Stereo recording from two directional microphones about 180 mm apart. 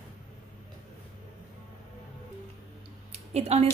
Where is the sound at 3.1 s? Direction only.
35° right (ahead or behind).